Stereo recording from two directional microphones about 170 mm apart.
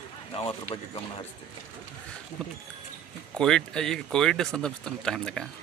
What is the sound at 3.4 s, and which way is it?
Speech, 5° left (ahead or behind).